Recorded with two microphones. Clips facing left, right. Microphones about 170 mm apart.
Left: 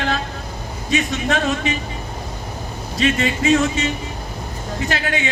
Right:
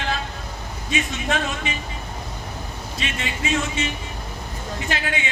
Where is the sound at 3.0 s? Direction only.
35° left (ahead or behind).